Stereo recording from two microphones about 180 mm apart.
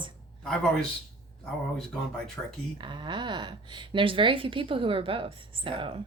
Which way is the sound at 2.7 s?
25° right (ahead or behind).